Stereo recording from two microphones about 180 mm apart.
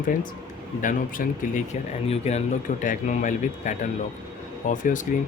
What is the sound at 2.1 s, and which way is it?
Speech, 35° left (ahead or behind).